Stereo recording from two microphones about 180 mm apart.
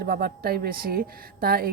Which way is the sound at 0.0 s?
55° right (ahead or behind).